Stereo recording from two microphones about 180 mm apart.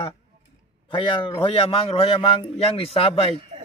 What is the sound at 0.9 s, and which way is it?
A man's voice, 25° left (ahead or behind).